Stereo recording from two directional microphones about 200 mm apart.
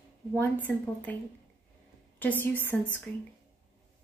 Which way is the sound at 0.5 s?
10° left (ahead or behind).